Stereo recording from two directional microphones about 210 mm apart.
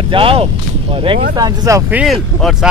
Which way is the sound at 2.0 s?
Centre (ahead or behind).